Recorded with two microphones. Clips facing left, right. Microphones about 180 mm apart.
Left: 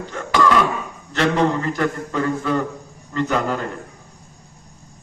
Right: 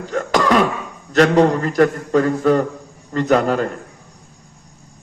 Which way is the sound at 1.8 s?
40° right (ahead or behind).